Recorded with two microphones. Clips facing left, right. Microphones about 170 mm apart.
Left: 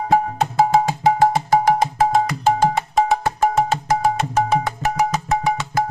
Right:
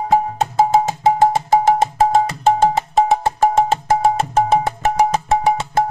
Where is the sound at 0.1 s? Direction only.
25° right (ahead or behind).